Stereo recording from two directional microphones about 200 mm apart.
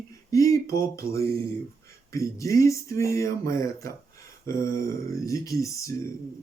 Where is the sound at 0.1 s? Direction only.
15° left (ahead or behind).